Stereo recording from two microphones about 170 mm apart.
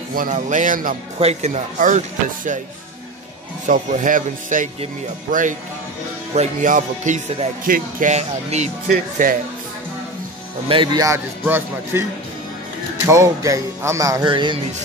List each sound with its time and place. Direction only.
0.1 s speech: 50° right (ahead or behind)
1.2 s speech: 40° right (ahead or behind)
3.6 s speech: 50° right (ahead or behind)
8.8 s speech: 60° right (ahead or behind)
10.7 s speech: 25° right (ahead or behind)